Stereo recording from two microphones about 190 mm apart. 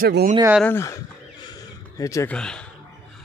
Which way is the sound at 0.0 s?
50° right (ahead or behind).